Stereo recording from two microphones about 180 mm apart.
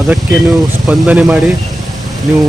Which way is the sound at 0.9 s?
10° right (ahead or behind).